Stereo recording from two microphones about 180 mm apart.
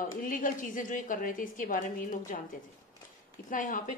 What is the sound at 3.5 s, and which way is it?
Speech, 45° left (ahead or behind).